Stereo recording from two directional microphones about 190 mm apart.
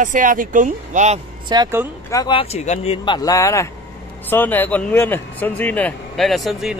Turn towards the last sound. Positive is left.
turn(degrees=0)  # may be behind; listen again after turning